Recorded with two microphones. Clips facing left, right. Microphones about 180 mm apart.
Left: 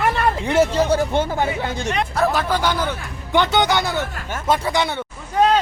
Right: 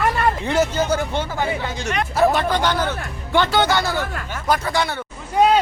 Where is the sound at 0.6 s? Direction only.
30° left (ahead or behind).